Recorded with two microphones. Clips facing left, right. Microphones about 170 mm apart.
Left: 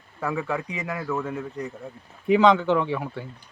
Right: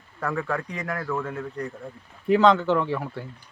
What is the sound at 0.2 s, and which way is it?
Speech, 5° left (ahead or behind).